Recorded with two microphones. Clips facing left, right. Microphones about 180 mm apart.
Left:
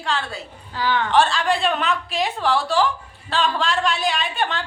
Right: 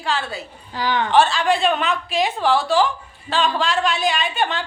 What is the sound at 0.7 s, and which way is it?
Speech, 15° right (ahead or behind).